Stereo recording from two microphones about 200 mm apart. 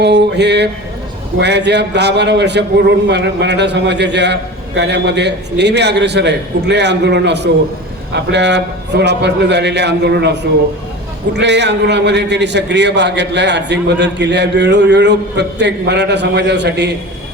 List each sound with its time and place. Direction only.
0.0 s a man's voice: 55° right (ahead or behind)
11.3 s a man's voice: 60° right (ahead or behind)